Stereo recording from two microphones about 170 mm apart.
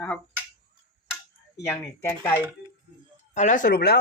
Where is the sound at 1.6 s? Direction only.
15° left (ahead or behind).